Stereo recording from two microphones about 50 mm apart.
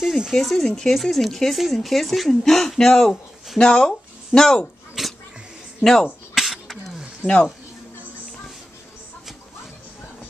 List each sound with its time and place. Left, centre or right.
0.0 s speech: centre
5.0 s a sound: centre
6.3 s cough: centre
7.2 s speech: centre